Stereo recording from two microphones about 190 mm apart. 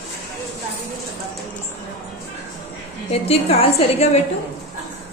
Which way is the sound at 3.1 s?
30° left (ahead or behind).